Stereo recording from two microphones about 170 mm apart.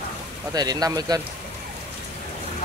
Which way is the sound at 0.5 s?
25° right (ahead or behind).